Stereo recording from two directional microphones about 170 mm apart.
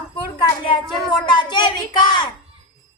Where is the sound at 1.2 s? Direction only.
25° left (ahead or behind).